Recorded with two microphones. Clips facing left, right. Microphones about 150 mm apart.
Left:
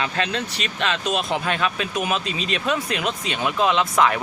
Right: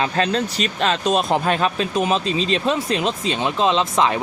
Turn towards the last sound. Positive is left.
turn(degrees=-25)  # may be behind; listen again after turning